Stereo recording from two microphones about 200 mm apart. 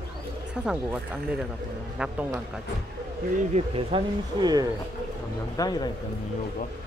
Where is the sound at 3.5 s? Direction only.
25° right (ahead or behind).